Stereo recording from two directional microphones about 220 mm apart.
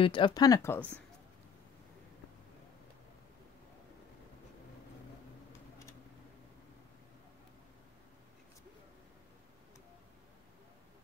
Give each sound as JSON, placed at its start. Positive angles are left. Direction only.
{"t": 0.0, "sound": "speech", "side_deg": 20}